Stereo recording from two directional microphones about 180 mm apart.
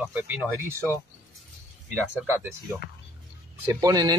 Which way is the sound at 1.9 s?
10° right (ahead or behind).